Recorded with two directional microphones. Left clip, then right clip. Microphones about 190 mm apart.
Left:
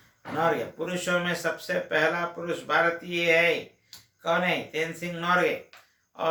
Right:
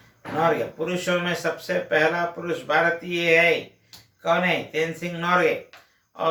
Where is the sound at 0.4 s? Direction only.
15° left (ahead or behind).